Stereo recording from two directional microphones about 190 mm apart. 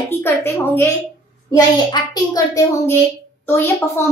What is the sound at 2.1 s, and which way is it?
A woman's voice, 20° left (ahead or behind).